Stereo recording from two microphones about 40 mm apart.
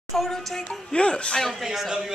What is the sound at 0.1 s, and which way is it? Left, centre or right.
Music, centre.